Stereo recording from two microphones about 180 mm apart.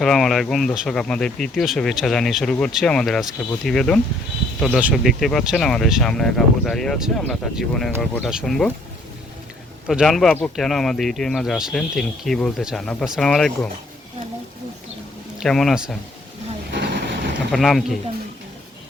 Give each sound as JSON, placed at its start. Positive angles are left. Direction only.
{"t": 0.0, "sound": "speech", "side_deg": 0}
{"t": 9.8, "sound": "speech", "side_deg": -5}
{"t": 15.4, "sound": "speech", "side_deg": 0}
{"t": 16.7, "sound": "vehicle", "side_deg": -75}
{"t": 17.5, "sound": "speech", "side_deg": 0}